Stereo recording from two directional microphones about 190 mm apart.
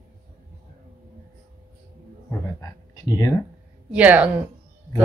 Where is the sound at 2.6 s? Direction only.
20° left (ahead or behind).